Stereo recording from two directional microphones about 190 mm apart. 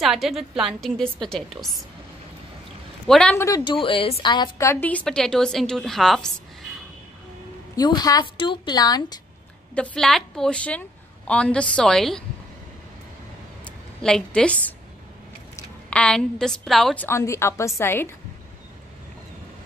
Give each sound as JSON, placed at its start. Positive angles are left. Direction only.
{"t": 0.0, "sound": "a woman's voice", "side_deg": 0}
{"t": 3.1, "sound": "a woman's voice", "side_deg": 5}
{"t": 3.4, "sound": "a woman's voice", "side_deg": 20}
{"t": 7.7, "sound": "a woman's voice", "side_deg": 20}
{"t": 9.8, "sound": "a woman's voice", "side_deg": 5}
{"t": 14.0, "sound": "a woman's voice", "side_deg": 5}